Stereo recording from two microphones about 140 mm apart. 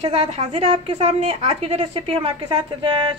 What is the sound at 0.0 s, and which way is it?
A woman's voice, 45° right (ahead or behind).